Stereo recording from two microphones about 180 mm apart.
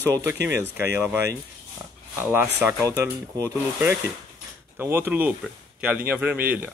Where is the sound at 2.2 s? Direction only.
10° right (ahead or behind).